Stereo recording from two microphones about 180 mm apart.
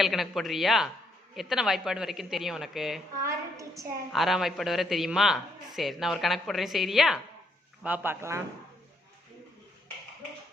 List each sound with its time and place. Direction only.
0.0 s a man's voice: centre (ahead or behind)
3.2 s a sound: 15° right (ahead or behind)
4.1 s a man's voice: centre (ahead or behind)